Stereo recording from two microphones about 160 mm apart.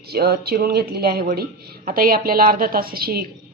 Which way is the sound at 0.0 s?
75° right (ahead or behind).